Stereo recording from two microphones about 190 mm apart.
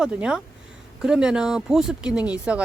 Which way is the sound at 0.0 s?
5° right (ahead or behind).